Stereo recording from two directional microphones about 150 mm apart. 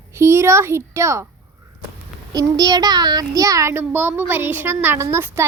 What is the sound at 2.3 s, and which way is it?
A child's voice, 25° right (ahead or behind).